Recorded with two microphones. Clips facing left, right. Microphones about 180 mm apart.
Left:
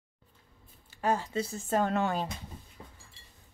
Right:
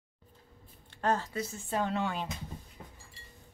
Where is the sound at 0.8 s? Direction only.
10° left (ahead or behind).